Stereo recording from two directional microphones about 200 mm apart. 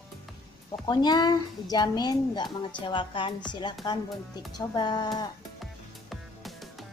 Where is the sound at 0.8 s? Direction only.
20° left (ahead or behind).